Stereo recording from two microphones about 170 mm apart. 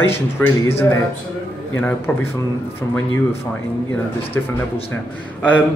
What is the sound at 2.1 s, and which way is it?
Speech, 10° left (ahead or behind).